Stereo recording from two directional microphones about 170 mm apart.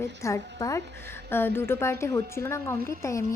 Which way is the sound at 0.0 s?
15° left (ahead or behind).